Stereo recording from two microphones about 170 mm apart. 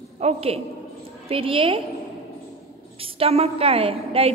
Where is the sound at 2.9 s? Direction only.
35° right (ahead or behind).